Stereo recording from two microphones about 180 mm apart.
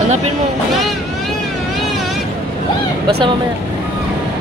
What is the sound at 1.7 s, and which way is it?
Vehicle, centre (ahead or behind).